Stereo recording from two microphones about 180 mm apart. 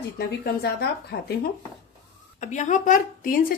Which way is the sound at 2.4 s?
40° left (ahead or behind).